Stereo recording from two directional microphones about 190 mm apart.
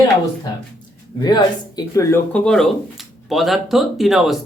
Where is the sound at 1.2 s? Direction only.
20° left (ahead or behind).